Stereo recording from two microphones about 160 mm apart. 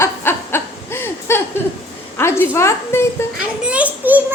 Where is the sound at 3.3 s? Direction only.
5° right (ahead or behind).